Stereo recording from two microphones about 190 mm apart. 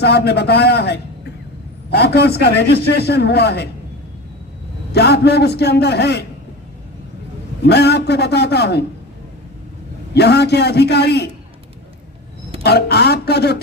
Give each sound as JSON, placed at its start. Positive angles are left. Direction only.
{"t": 0.0, "sound": "a man's voice", "side_deg": 60}
{"t": 4.9, "sound": "a man's voice", "side_deg": 60}
{"t": 7.6, "sound": "a man's voice", "side_deg": 60}
{"t": 10.2, "sound": "a man's voice", "side_deg": 60}
{"t": 12.6, "sound": "a man's voice", "side_deg": 60}